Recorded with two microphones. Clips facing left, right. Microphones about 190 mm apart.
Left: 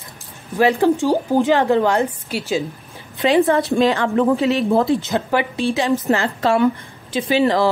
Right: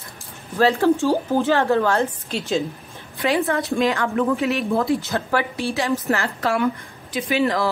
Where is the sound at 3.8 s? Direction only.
30° left (ahead or behind).